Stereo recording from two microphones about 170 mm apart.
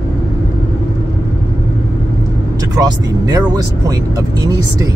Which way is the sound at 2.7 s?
25° right (ahead or behind).